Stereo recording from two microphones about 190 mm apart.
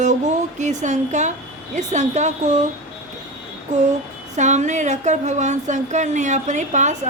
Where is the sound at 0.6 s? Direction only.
40° right (ahead or behind).